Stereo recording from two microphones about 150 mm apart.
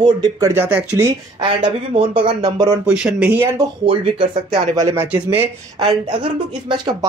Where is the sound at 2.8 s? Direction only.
5° right (ahead or behind).